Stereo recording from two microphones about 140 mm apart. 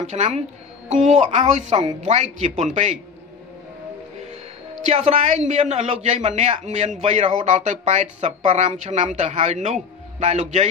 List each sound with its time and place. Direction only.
0.0 s speech: 55° right (ahead or behind)
4.8 s a man's voice: 55° right (ahead or behind)